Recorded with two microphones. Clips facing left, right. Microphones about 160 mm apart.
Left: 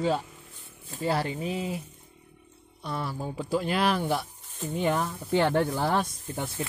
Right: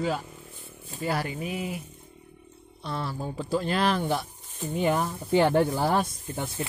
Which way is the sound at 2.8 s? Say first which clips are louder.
Even; 10° left (ahead or behind).